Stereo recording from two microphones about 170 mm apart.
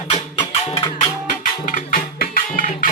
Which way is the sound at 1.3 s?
55° left (ahead or behind).